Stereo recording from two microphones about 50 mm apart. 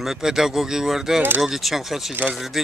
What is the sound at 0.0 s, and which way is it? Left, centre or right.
Speech, centre.